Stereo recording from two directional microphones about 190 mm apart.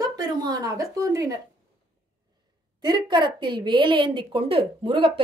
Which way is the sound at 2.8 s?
25° right (ahead or behind).